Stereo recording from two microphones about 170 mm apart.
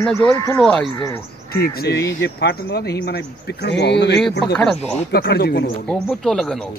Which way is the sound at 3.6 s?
85° left.